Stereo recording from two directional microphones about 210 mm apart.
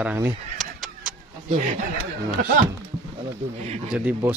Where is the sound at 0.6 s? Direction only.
Centre (ahead or behind).